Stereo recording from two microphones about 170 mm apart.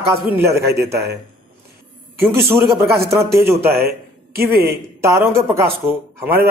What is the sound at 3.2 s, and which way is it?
Speech, 15° right (ahead or behind).